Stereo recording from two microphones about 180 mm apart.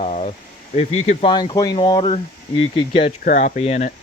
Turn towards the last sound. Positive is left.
turn(degrees=40)  # may be behind; listen again after turning